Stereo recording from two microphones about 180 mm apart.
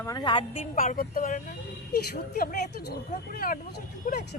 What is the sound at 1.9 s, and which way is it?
Speech, 60° left (ahead or behind).